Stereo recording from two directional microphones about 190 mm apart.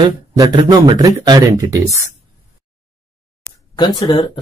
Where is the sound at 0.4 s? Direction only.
20° right (ahead or behind).